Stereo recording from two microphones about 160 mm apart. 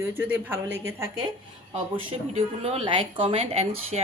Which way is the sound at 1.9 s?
40° right (ahead or behind).